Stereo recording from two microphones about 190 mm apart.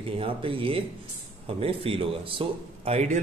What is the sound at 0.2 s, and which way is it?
Speech, 30° right (ahead or behind).